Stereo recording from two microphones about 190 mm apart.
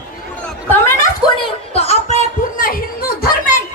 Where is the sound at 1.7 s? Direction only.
35° left (ahead or behind); by 3.3 s 50° left (ahead or behind).